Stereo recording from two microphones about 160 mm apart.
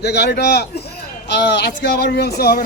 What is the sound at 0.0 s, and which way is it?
A man's voice, 90° left.